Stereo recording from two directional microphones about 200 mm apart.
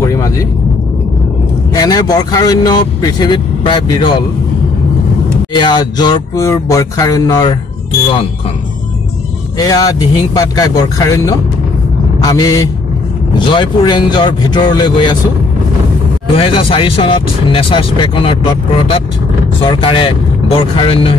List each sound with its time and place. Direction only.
0.0 s a sound: 15° left (ahead or behind)
1.7 s speech: 20° left (ahead or behind)
5.5 s speech: 20° left (ahead or behind)
9.6 s speech: 20° left (ahead or behind)
16.3 s speech: 25° left (ahead or behind)